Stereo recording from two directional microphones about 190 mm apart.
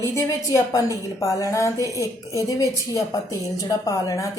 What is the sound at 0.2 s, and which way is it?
A woman's voice, 15° left (ahead or behind).